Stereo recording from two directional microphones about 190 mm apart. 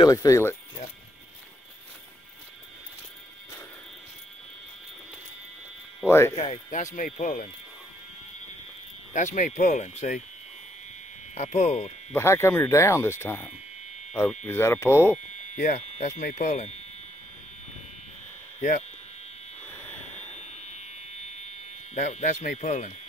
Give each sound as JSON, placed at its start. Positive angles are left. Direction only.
{"t": 0.0, "sound": "speech", "side_deg": 20}
{"t": 6.0, "sound": "speech", "side_deg": 15}
{"t": 6.3, "sound": "speech", "side_deg": 35}
{"t": 9.1, "sound": "speech", "side_deg": 40}
{"t": 11.3, "sound": "speech", "side_deg": 40}
{"t": 12.1, "sound": "speech", "side_deg": 15}
{"t": 15.5, "sound": "speech", "side_deg": 40}
{"t": 18.6, "sound": "speech", "side_deg": 40}
{"t": 19.7, "sound": "buzzer", "side_deg": 10}
{"t": 21.9, "sound": "speech", "side_deg": 40}